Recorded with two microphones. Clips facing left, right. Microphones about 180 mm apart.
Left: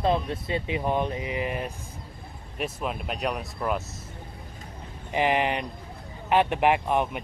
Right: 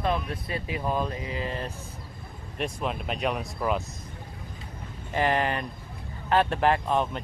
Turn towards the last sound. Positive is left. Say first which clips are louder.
# left 1 dB
turn(degrees=15)  # may be behind; listen again after turning